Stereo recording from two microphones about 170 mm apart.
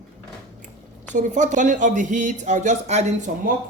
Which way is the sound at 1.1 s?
45° right (ahead or behind).